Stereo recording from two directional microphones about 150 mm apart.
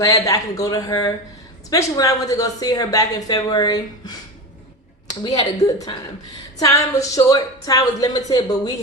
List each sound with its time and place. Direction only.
0.0 s a woman's voice: 25° left (ahead or behind)
5.5 s a woman's voice: 25° left (ahead or behind)